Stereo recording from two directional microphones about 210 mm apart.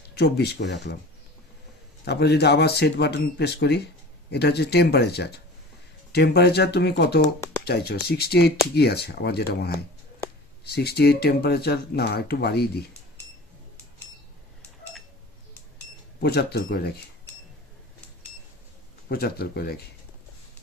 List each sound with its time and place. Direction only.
0.1 s speech: 50° left (ahead or behind)
2.0 s speech: 50° left (ahead or behind)
16.2 s speech: 50° left (ahead or behind)
19.0 s speech: 45° left (ahead or behind)